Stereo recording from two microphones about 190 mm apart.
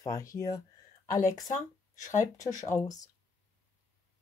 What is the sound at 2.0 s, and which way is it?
Speech, 40° left (ahead or behind).